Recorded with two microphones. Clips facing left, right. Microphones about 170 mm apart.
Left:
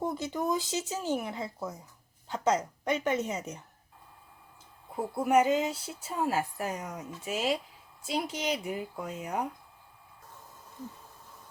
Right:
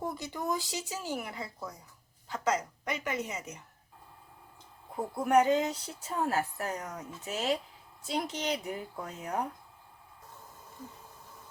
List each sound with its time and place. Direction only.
0.0 s speech: 20° left (ahead or behind)
4.9 s speech: 10° left (ahead or behind)